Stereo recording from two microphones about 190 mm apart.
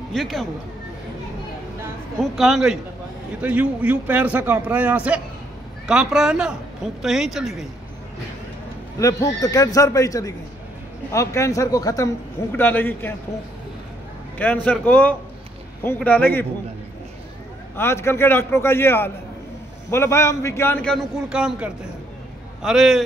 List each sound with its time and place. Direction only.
0.1 s a man's voice: centre (ahead or behind)
2.3 s a man's voice: centre (ahead or behind)
9.0 s a man's voice: 20° left (ahead or behind)
14.4 s a man's voice: 10° left (ahead or behind)
17.7 s a man's voice: 15° left (ahead or behind); by 23.0 s centre (ahead or behind)